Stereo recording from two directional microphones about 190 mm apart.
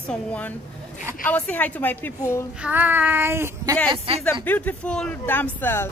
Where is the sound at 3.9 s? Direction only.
30° right (ahead or behind).